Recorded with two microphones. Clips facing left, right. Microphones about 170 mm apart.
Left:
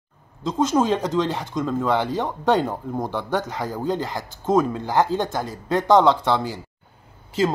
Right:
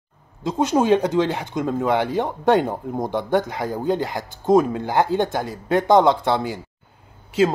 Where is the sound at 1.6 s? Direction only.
15° right (ahead or behind).